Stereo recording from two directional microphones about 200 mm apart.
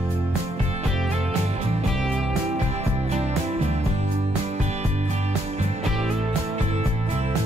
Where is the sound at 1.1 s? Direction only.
35° right (ahead or behind).